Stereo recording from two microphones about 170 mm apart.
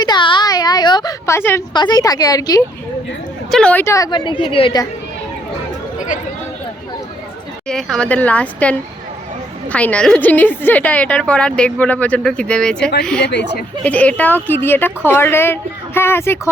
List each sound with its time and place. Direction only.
0.0 s a sound: 25° left (ahead or behind)
1.7 s a woman's voice: 25° left (ahead or behind)
3.5 s a woman's voice: 5° left (ahead or behind); by 4.8 s 30° left (ahead or behind)
7.7 s a woman's voice: 5° left (ahead or behind)
9.7 s a woman's voice: 5° left (ahead or behind)
13.2 s speech: 80° left
13.8 s a woman's voice: 10° left (ahead or behind)